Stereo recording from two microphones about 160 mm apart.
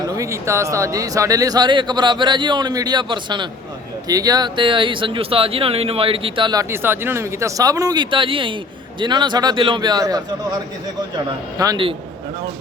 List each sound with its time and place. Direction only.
0.2 s speech: 15° right (ahead or behind)
11.3 s speech: 25° right (ahead or behind)